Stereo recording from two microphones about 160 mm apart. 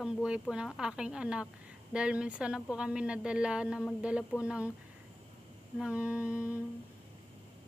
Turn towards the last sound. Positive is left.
turn(degrees=-10)  # may be behind; listen again after turning